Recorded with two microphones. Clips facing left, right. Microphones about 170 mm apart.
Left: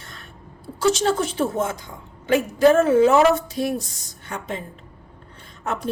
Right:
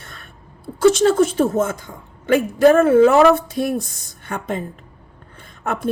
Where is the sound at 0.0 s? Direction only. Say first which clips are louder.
Right 1 dB; 55° right (ahead or behind).